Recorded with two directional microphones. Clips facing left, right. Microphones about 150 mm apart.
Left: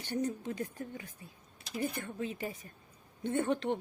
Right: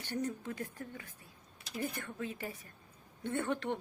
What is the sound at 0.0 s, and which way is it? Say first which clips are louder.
A woman's voice: left 3 dB; 20° left (ahead or behind).